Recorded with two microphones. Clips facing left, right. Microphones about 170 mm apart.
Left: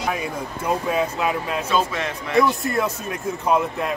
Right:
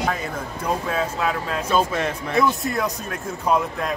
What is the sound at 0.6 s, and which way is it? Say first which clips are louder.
Speech: left 2 dB; 15° left (ahead or behind).